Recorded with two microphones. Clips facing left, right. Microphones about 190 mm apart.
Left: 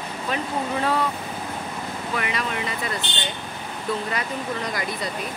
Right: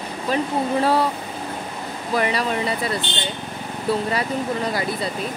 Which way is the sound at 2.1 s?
35° right (ahead or behind).